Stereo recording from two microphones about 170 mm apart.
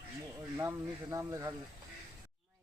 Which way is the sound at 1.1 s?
20° right (ahead or behind).